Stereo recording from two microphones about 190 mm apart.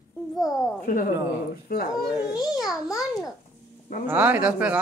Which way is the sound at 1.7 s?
50° left (ahead or behind).